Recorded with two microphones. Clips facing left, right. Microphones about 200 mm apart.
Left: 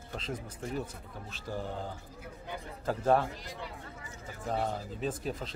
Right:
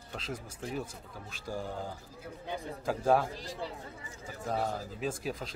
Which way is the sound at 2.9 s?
10° right (ahead or behind).